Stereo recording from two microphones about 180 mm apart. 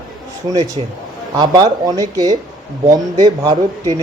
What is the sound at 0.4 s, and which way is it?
Speech, 20° right (ahead or behind).